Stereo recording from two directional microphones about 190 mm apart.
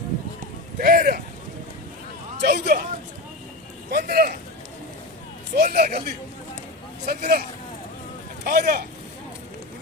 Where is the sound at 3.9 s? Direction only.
50° right (ahead or behind).